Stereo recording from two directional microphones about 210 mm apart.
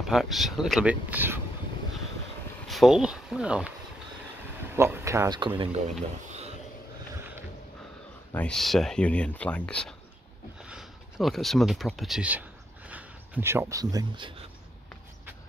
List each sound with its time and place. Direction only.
0.0 s speech: centre (ahead or behind)
2.7 s speech: centre (ahead or behind)
4.7 s speech: 10° right (ahead or behind)
8.3 s speech: 5° left (ahead or behind)
10.6 s a sound: 5° right (ahead or behind); by 14.3 s 20° right (ahead or behind)